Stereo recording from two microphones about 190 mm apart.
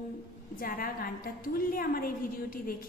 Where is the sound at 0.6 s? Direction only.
50° left (ahead or behind).